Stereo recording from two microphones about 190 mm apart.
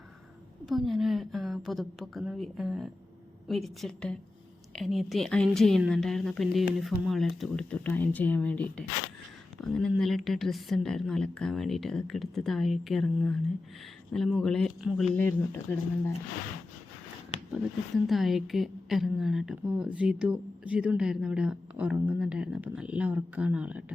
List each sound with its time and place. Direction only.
0.6 s speech: centre (ahead or behind)
17.5 s speech: centre (ahead or behind)